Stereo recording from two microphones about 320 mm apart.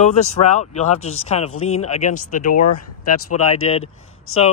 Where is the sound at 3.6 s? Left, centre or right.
Centre.